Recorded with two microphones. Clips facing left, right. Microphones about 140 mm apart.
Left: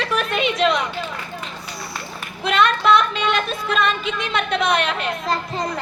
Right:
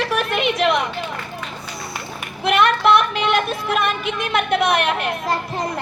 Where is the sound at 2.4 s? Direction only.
60° right (ahead or behind).